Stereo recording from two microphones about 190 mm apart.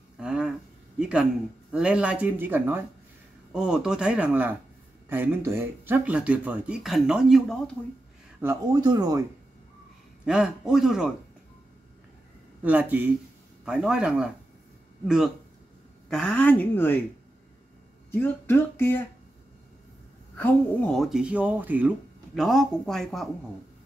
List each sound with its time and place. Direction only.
0.2 s a sound: 5° right (ahead or behind)
1.7 s speech: 5° right (ahead or behind)
8.4 s speech: 15° right (ahead or behind)
10.2 s speech: 5° right (ahead or behind)
12.6 s speech: 10° right (ahead or behind)
16.1 s a woman's voice: 5° left (ahead or behind)
18.2 s a woman's voice: 10° left (ahead or behind)
20.3 s speech: 10° left (ahead or behind)